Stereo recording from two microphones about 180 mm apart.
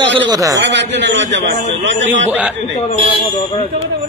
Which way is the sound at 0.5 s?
75° right (ahead or behind).